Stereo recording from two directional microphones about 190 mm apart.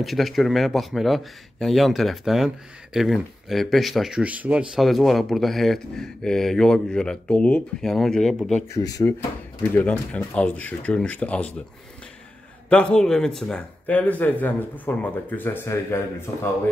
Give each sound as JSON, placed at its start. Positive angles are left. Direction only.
{"t": 0.0, "sound": "a man's voice", "side_deg": 0}
{"t": 8.7, "sound": "speech", "side_deg": 20}
{"t": 9.8, "sound": "speech", "side_deg": 5}
{"t": 12.6, "sound": "a man's voice", "side_deg": 5}